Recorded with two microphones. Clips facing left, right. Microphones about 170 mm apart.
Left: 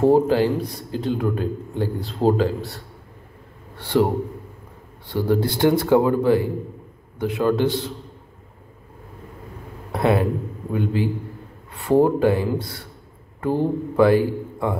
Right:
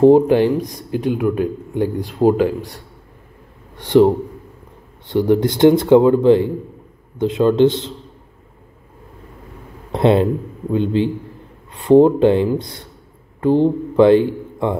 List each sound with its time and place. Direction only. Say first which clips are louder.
0.0 s a man's voice: right 6 dB; 20° right (ahead or behind)
9.9 s a man's voice: right 5 dB; 25° right (ahead or behind)